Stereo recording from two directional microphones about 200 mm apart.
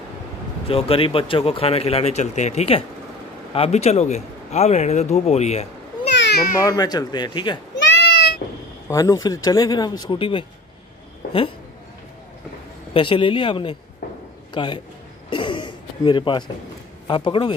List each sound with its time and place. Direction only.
0.7 s a man's voice: 30° left (ahead or behind)
6.1 s meow: 55° left (ahead or behind)
6.6 s speech: 20° left (ahead or behind)
7.8 s a sound: 60° left (ahead or behind)
8.8 s speech: 20° left (ahead or behind)
11.2 s a sound: 45° left (ahead or behind)
12.9 s a man's voice: 25° left (ahead or behind)
15.2 s throat clearing: 25° left (ahead or behind)
17.1 s speech: 25° left (ahead or behind)